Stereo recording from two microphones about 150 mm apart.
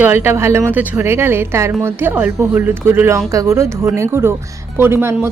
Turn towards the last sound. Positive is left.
turn(degrees=-15)  # may be behind; listen again after turning